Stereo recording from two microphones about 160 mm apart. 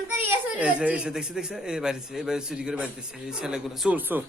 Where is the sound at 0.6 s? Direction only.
5° right (ahead or behind).